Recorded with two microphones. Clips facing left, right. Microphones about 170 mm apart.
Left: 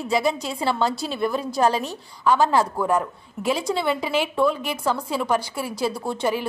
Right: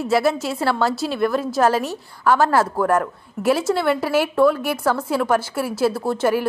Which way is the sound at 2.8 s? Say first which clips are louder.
Right 3 dB; 65° right (ahead or behind).